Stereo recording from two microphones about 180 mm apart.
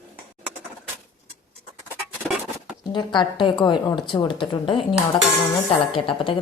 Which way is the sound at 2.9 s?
25° left (ahead or behind).